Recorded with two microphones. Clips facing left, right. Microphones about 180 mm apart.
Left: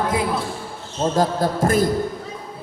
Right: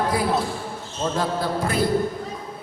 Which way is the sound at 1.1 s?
45° left (ahead or behind).